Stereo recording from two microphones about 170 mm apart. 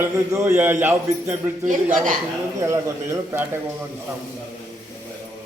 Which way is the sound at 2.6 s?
15° right (ahead or behind).